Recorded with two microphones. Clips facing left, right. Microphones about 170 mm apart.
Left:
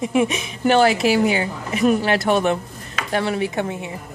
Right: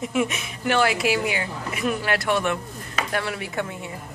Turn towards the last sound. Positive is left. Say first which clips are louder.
# left 7 dB
turn(degrees=30)  # may be behind; listen again after turning